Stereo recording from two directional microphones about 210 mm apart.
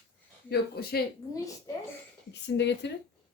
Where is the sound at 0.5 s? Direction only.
50° left (ahead or behind).